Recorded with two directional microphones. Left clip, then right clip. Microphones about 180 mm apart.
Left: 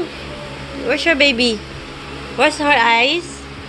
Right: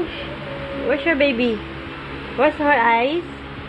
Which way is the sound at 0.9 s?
20° left (ahead or behind).